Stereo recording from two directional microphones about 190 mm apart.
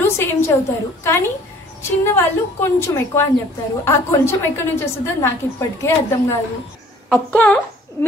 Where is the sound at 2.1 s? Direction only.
10° left (ahead or behind).